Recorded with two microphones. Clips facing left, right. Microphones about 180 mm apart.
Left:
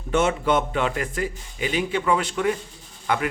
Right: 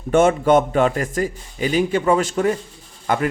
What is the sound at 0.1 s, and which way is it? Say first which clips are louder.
A man's voice: right 7 dB; 50° right (ahead or behind).